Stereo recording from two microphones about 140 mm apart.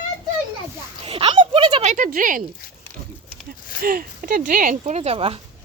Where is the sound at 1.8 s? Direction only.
55° right (ahead or behind).